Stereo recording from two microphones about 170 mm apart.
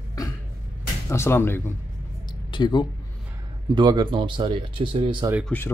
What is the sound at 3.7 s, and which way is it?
Speech, 25° right (ahead or behind).